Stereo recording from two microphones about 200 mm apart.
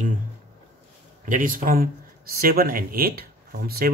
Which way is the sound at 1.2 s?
40° right (ahead or behind).